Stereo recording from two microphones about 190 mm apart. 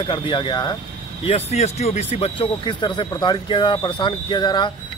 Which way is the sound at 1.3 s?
35° left (ahead or behind).